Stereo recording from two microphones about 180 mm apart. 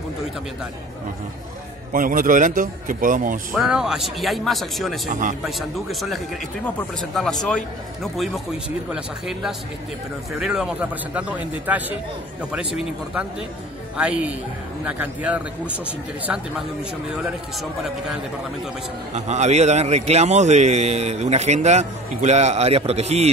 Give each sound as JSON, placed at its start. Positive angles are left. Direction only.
{"t": 1.9, "sound": "a man's voice", "side_deg": -50}
{"t": 3.5, "sound": "a man's voice", "side_deg": -5}
{"t": 19.1, "sound": "a man's voice", "side_deg": -40}